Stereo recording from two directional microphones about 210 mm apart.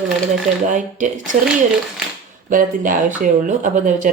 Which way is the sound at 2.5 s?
40° right (ahead or behind).